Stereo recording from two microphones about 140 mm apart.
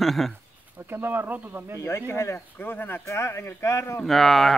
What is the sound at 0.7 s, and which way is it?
Speech, 15° right (ahead or behind).